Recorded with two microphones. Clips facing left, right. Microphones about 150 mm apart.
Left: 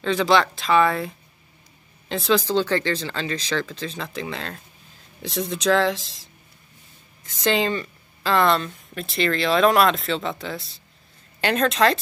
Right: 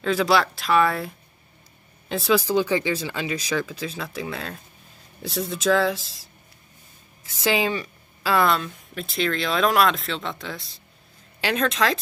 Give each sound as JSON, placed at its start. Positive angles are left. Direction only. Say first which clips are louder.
{"t": 0.0, "sound": "speech", "louder": "left 1 dB", "side_deg": -5}
{"t": 7.4, "sound": "speech", "louder": "left 1 dB", "side_deg": -5}